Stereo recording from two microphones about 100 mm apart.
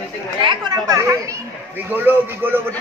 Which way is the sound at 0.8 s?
35° right (ahead or behind).